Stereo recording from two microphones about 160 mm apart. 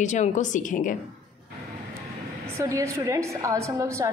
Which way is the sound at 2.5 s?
20° right (ahead or behind).